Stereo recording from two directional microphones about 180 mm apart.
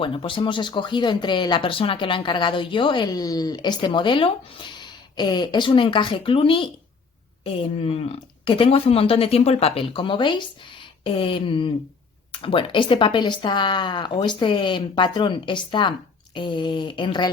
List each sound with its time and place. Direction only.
0.0 s speech: 30° left (ahead or behind)